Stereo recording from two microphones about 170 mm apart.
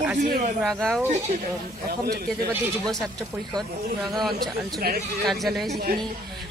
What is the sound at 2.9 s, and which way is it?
Speech, centre (ahead or behind).